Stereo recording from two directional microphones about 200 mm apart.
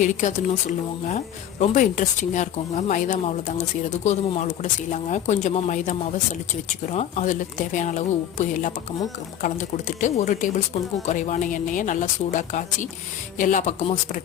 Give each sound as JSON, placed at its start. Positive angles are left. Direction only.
{"t": 0.0, "sound": "speech", "side_deg": 40}